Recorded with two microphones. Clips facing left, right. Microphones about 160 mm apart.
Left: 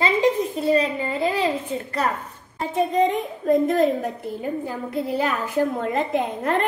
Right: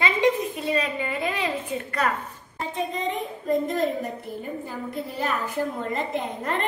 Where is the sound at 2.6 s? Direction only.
45° left (ahead or behind).